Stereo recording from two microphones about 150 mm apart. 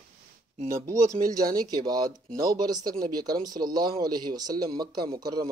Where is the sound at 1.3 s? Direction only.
25° right (ahead or behind).